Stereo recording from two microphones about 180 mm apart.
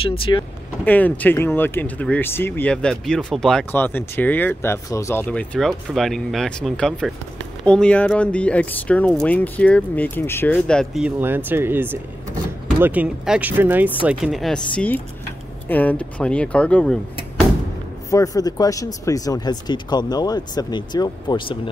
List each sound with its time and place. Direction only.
0.0 s speech: 30° left (ahead or behind)
0.8 s speech: 10° left (ahead or behind)
11.1 s speech: 10° right (ahead or behind); by 17.0 s 5° left (ahead or behind)
18.1 s speech: 20° left (ahead or behind)